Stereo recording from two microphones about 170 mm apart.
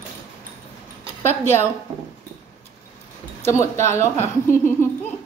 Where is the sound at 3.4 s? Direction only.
15° left (ahead or behind).